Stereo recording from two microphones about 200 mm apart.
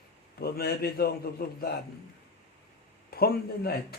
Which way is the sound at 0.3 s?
50° left (ahead or behind).